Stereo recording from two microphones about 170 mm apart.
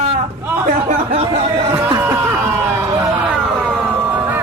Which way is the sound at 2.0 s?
15° right (ahead or behind).